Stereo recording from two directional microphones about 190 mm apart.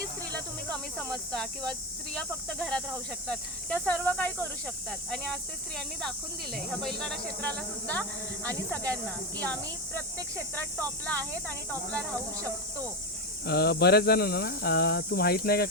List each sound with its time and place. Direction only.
0.3 s snake: 5° left (ahead or behind)
2.1 s speech: 5° left (ahead or behind)
13.4 s speech: 55° left (ahead or behind)